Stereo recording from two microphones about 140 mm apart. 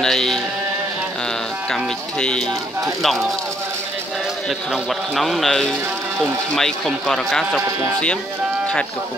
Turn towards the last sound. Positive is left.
turn(degrees=0)  # may be behind; listen again after turning